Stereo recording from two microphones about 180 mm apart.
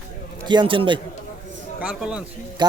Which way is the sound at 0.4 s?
25° right (ahead or behind).